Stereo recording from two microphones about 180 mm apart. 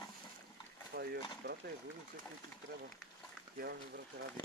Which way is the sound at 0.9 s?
60° right (ahead or behind).